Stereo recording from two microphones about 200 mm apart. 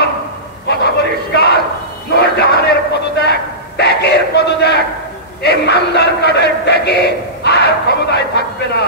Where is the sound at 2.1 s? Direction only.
55° left (ahead or behind).